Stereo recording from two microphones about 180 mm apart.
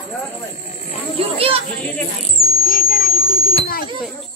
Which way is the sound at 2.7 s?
55° left (ahead or behind).